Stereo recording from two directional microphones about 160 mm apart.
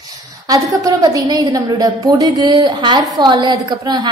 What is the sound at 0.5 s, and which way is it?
A woman's voice, 20° right (ahead or behind).